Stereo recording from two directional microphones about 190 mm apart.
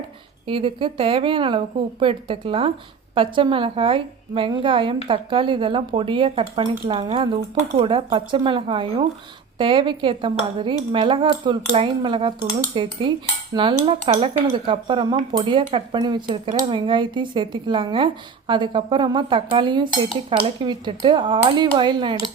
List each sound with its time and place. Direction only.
0.4 s speech: 25° right (ahead or behind)
13.8 s dishes: 30° right (ahead or behind)
14.4 s speech: 25° right (ahead or behind)